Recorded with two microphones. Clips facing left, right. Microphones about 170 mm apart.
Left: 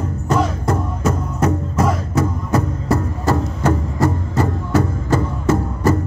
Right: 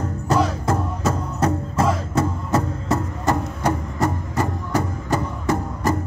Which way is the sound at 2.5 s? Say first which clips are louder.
Left 3 dB; 20° right (ahead or behind).